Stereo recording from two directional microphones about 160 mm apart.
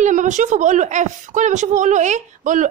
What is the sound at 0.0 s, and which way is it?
A woman's voice, 50° right (ahead or behind).